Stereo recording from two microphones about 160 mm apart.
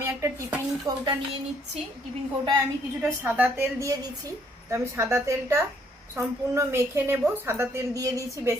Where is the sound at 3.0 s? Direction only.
10° right (ahead or behind).